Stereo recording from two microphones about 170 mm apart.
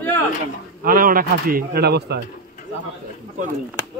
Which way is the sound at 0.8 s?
55° right (ahead or behind).